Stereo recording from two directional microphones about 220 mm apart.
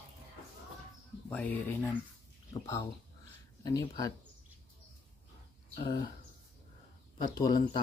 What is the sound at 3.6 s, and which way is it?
Speech, 15° left (ahead or behind).